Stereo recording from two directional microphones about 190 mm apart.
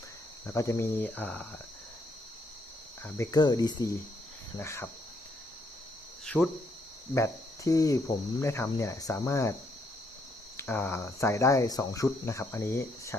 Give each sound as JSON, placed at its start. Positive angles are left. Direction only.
{"t": 0.4, "sound": "speech", "side_deg": 15}
{"t": 3.0, "sound": "cricket", "side_deg": 15}
{"t": 4.5, "sound": "speech", "side_deg": 15}
{"t": 6.2, "sound": "cricket", "side_deg": 10}
{"t": 8.4, "sound": "speech", "side_deg": 15}
{"t": 10.6, "sound": "speech", "side_deg": 10}